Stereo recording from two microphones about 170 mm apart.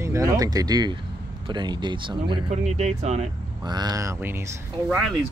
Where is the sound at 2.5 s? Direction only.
40° right (ahead or behind).